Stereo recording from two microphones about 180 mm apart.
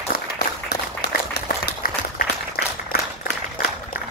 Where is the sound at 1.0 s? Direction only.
65° left (ahead or behind).